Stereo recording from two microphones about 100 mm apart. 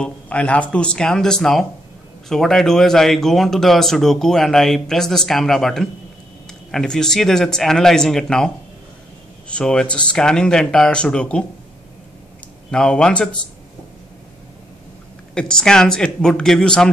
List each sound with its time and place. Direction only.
0.0 s speech: 15° left (ahead or behind)
9.5 s speech: 10° left (ahead or behind)
12.7 s speech: 10° left (ahead or behind)
15.3 s speech: 10° left (ahead or behind)